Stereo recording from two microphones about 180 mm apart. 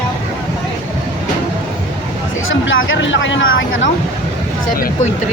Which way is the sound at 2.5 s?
90° left.